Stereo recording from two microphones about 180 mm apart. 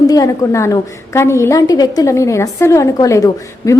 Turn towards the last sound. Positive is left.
turn(degrees=15)  # may be behind; listen again after turning